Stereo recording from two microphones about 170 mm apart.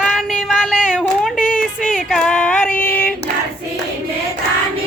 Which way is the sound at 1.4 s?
50° left (ahead or behind).